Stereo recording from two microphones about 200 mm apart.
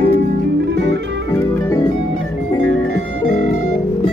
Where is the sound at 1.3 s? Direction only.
10° left (ahead or behind).